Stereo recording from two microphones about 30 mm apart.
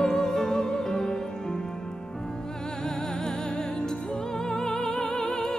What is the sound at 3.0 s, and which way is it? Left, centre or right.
Music, left.